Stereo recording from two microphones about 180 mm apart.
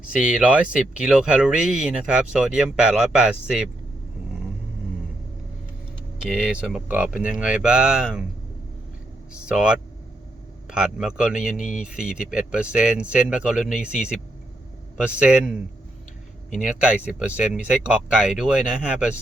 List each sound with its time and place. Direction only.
0.2 s speech: 5° right (ahead or behind)
6.2 s speech: 5° right (ahead or behind)
9.5 s speech: 5° right (ahead or behind)